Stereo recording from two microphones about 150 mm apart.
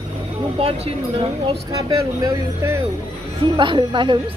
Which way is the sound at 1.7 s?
25° right (ahead or behind).